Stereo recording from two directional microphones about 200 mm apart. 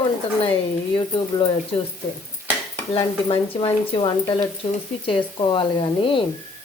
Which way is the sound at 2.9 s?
25° left (ahead or behind).